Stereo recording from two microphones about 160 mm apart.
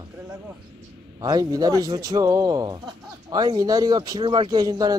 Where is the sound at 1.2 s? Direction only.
25° right (ahead or behind).